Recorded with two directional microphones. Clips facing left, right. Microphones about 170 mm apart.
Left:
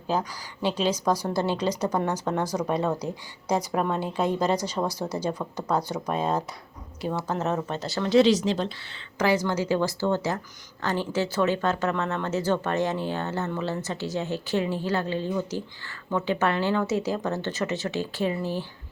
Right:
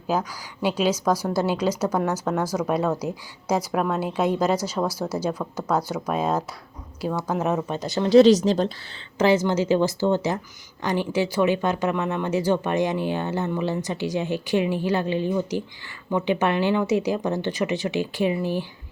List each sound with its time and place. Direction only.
0.1 s speech: 10° right (ahead or behind)
1.1 s a woman's voice: 15° left (ahead or behind)
1.4 s speech: 10° right (ahead or behind)
4.9 s a woman's voice: 15° left (ahead or behind)
5.7 s speech: 5° right (ahead or behind)
8.1 s speech: 40° right (ahead or behind)
9.1 s speech: 25° right (ahead or behind)